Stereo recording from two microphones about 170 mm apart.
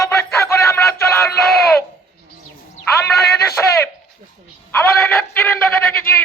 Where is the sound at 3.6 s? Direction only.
10° left (ahead or behind).